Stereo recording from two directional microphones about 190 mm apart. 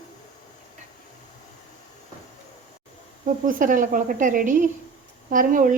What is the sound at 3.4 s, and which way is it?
Speech, 45° right (ahead or behind).